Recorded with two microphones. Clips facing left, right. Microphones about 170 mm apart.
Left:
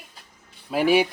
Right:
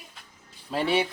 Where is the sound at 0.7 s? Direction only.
10° left (ahead or behind).